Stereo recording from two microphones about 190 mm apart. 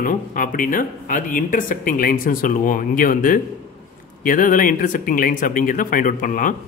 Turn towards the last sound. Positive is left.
turn(degrees=45)  # may be behind; listen again after turning